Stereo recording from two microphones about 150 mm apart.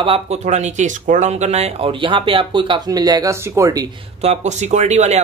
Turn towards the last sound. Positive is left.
turn(degrees=-50)  # may be behind; listen again after turning